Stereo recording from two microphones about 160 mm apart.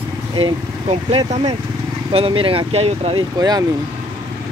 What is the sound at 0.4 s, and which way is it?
Speech, 40° right (ahead or behind).